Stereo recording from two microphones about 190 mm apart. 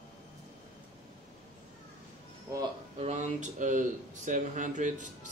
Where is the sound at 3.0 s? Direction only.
40° right (ahead or behind).